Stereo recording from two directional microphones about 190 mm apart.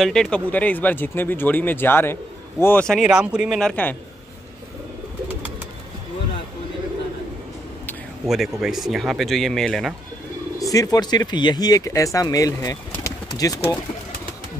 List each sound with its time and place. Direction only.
0.0 s speech: 5° left (ahead or behind)
8.3 s speech: centre (ahead or behind)
10.6 s speech: 20° left (ahead or behind)